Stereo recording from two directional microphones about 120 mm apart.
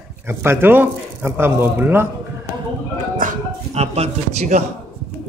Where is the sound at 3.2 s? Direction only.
90° right.